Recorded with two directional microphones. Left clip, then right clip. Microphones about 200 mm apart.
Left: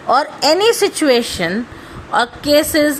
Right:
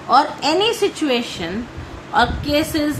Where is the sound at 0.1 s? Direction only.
45° left (ahead or behind).